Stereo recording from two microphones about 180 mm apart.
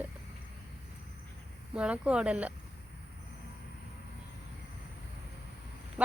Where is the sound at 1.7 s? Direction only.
5° right (ahead or behind).